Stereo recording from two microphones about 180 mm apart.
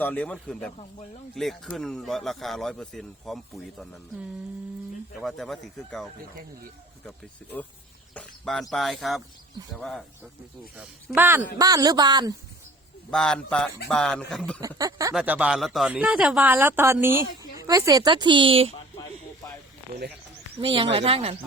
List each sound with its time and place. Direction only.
0.0 s speech: 10° left (ahead or behind)
5.2 s speech: centre (ahead or behind)
8.1 s speech: 5° left (ahead or behind)
10.8 s a man's voice: 10° right (ahead or behind)
13.1 s speech: 5° left (ahead or behind)
14.8 s a man's voice: 20° right (ahead or behind)
15.1 s a man's voice: 5° right (ahead or behind); by 18.7 s 30° right (ahead or behind)
19.9 s speech: 65° right (ahead or behind)
20.6 s a man's voice: 30° right (ahead or behind)